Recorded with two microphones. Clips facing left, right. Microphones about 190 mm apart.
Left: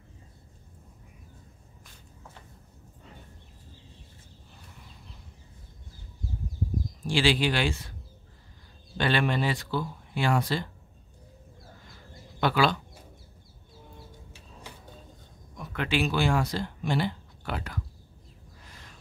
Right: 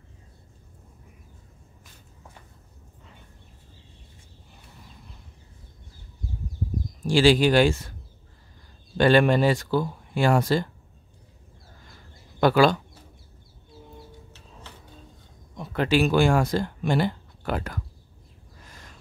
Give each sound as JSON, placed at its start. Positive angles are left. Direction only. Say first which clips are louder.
{"t": 7.1, "sound": "speech", "louder": "right 7 dB", "side_deg": -45}
{"t": 8.9, "sound": "speech", "louder": "right 8 dB", "side_deg": -45}
{"t": 12.4, "sound": "speech", "louder": "right 6 dB", "side_deg": -45}
{"t": 14.7, "sound": "a sound", "louder": "left 1 dB", "side_deg": 10}
{"t": 15.5, "sound": "speech", "louder": "right 6 dB", "side_deg": -30}